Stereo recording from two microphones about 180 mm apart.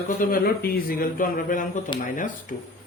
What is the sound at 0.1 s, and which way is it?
Speech, 50° left (ahead or behind).